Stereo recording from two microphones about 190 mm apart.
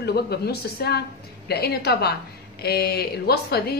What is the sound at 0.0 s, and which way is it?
A woman's voice, 55° left (ahead or behind).